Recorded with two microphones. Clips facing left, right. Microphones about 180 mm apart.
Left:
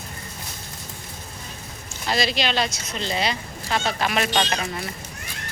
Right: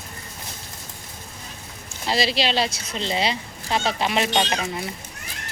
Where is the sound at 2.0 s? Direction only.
30° right (ahead or behind).